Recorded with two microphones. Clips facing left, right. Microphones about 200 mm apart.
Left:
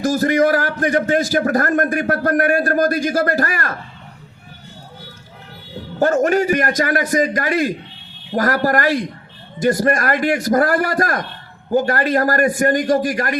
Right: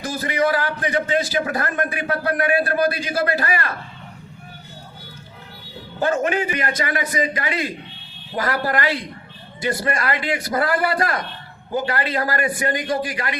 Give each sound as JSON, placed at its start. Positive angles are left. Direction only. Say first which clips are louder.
{"t": 0.0, "sound": "a man's voice", "louder": "left 7 dB", "side_deg": 45}
{"t": 6.0, "sound": "a man's voice", "louder": "left 5 dB", "side_deg": 45}